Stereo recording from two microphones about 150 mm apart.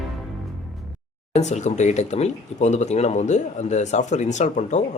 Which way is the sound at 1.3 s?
50° left (ahead or behind).